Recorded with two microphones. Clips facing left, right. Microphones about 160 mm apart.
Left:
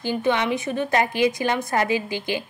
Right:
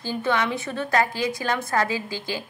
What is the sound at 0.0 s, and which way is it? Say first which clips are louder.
A woman's voice: left 2 dB; 15° left (ahead or behind).